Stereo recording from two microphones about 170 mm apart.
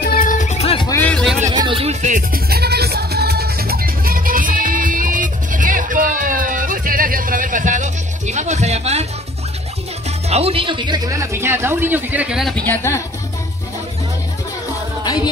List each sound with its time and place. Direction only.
0.0 s music: 55° left (ahead or behind); by 0.8 s 35° left (ahead or behind)
0.8 s music: 10° left (ahead or behind)
1.5 s music: 30° right (ahead or behind)
10.3 s speech: 35° right (ahead or behind); by 12.6 s centre (ahead or behind)
12.6 s speech: 15° left (ahead or behind)